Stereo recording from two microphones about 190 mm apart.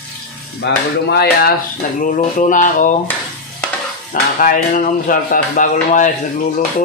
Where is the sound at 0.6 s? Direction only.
60° left (ahead or behind).